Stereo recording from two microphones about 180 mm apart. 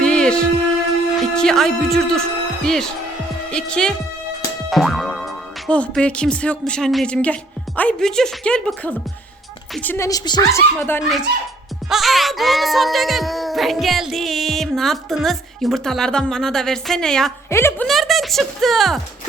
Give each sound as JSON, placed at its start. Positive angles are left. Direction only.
{"t": 0.0, "sound": "music", "side_deg": 5}
{"t": 1.2, "sound": "a woman's voice", "side_deg": 0}
{"t": 11.9, "sound": "speech", "side_deg": 0}
{"t": 17.5, "sound": "a woman's voice", "side_deg": 15}
{"t": 17.8, "sound": "speech", "side_deg": 0}